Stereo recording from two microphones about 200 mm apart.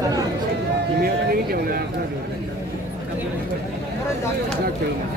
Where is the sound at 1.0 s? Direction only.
50° right (ahead or behind).